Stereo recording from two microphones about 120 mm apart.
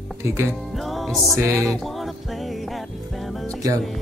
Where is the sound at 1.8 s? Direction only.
Centre (ahead or behind).